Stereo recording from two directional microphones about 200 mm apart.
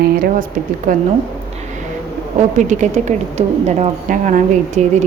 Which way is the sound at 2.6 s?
40° right (ahead or behind).